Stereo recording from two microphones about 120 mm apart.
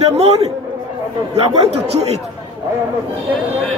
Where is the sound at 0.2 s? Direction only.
55° right (ahead or behind).